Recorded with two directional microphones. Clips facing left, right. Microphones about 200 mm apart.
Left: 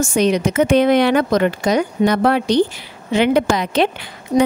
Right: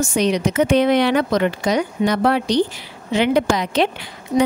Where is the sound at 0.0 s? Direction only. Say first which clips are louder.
Left 2 dB; 50° left (ahead or behind).